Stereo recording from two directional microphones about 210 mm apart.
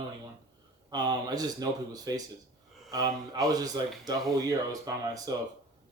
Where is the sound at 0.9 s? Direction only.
20° right (ahead or behind).